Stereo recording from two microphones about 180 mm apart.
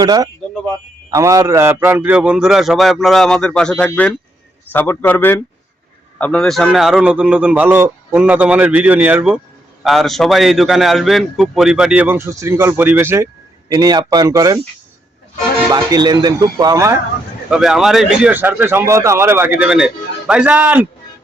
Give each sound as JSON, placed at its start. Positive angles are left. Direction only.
{"t": 0.0, "sound": "a man's voice", "side_deg": -20}
{"t": 15.7, "sound": "speech", "side_deg": -20}
{"t": 17.5, "sound": "speech", "side_deg": 0}